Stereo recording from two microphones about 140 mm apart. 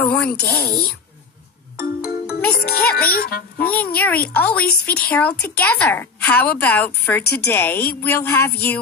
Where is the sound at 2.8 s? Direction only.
90° left.